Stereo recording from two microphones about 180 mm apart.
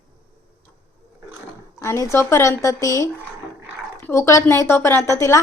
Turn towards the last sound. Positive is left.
turn(degrees=15)  # may be behind; listen again after turning